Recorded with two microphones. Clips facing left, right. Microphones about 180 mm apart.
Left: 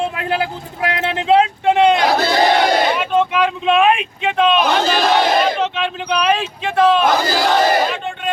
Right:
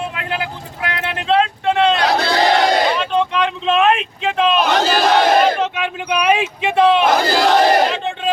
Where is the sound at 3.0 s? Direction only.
5° left (ahead or behind); by 7.1 s 20° right (ahead or behind).